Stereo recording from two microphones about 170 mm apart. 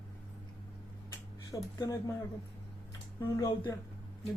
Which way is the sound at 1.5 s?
20° left (ahead or behind).